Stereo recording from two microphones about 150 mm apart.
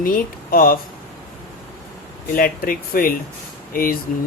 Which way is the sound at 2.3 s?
75° left (ahead or behind).